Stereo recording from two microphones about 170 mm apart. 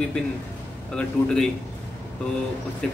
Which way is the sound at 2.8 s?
5° left (ahead or behind).